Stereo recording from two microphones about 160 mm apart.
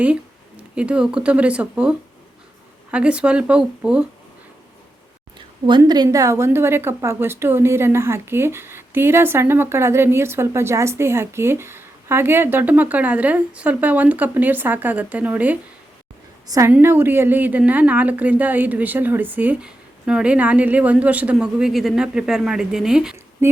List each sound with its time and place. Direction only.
0.8 s a woman's voice: 5° right (ahead or behind)
5.8 s a woman's voice: 20° right (ahead or behind); by 23.1 s 5° right (ahead or behind)
23.4 s speech: 15° right (ahead or behind)